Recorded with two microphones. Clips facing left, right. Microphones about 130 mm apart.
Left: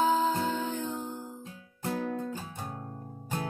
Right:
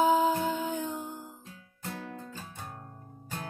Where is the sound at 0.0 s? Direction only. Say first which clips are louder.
Right 2 dB; 10° right (ahead or behind).